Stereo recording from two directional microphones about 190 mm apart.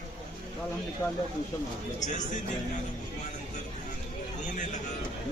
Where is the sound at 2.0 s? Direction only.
40° left (ahead or behind).